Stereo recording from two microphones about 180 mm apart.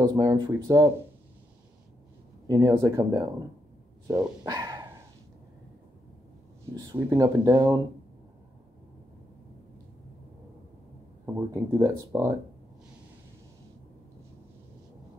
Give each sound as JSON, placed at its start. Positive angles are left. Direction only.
{"t": 0.0, "sound": "speech", "side_deg": -20}
{"t": 2.4, "sound": "speech", "side_deg": -20}
{"t": 4.5, "sound": "a sound", "side_deg": -20}
{"t": 6.9, "sound": "speech", "side_deg": -15}
{"t": 11.2, "sound": "speech", "side_deg": -15}